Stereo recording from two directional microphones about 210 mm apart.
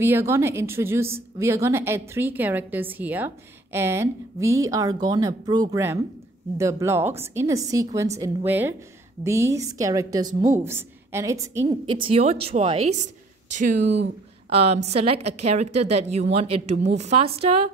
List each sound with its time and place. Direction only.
0.0 s a woman's voice: 10° right (ahead or behind); by 17.6 s 25° right (ahead or behind)